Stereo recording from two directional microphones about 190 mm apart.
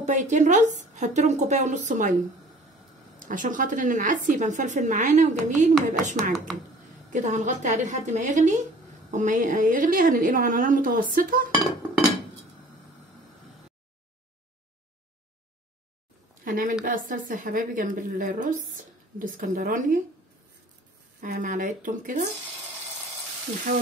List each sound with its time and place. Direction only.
0.0 s a woman's voice: 40° right (ahead or behind)
3.2 s a woman's voice: 45° right (ahead or behind)
16.4 s a woman's voice: 45° right (ahead or behind)
21.2 s a woman's voice: 45° right (ahead or behind)
23.7 s a woman's voice: 45° right (ahead or behind)